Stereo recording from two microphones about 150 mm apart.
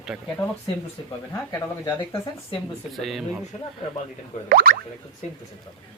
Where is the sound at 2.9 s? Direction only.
Centre (ahead or behind).